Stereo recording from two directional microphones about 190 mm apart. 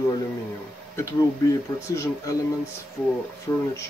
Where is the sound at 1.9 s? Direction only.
15° left (ahead or behind).